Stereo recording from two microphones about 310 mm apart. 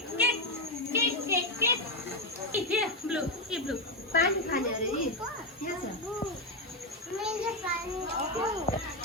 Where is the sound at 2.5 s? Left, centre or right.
Centre.